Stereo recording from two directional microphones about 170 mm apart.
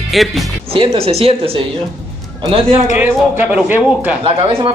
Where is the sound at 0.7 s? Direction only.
35° right (ahead or behind).